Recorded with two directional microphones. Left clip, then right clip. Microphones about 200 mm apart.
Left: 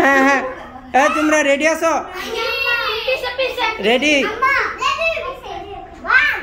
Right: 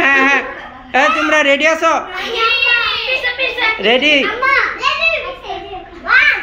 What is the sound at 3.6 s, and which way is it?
A child's voice, 15° left (ahead or behind).